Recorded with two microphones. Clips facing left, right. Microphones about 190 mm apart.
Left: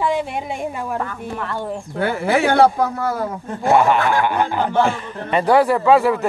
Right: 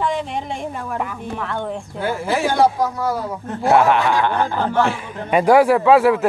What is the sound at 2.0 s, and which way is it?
Speech, 65° left (ahead or behind).